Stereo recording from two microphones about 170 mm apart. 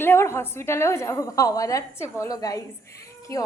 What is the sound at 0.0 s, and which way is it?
A woman's voice, 15° left (ahead or behind).